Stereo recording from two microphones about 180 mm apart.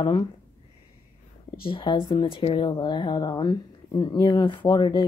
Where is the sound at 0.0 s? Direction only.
20° left (ahead or behind).